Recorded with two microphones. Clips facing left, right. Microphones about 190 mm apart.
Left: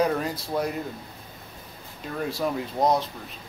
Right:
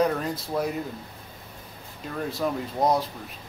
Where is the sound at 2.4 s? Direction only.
5° right (ahead or behind).